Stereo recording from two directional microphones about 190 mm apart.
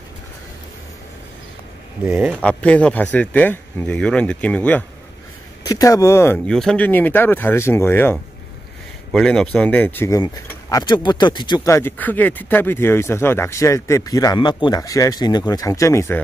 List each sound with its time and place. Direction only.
2.0 s speech: 10° right (ahead or behind)
2.4 s speech: 5° left (ahead or behind)